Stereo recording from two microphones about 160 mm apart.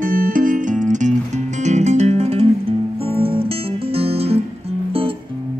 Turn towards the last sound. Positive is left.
turn(degrees=-40)  # may be behind; listen again after turning